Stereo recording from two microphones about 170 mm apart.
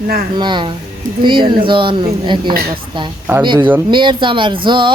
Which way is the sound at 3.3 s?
10° right (ahead or behind).